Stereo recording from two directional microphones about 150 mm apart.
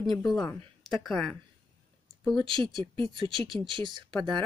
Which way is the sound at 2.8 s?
35° right (ahead or behind).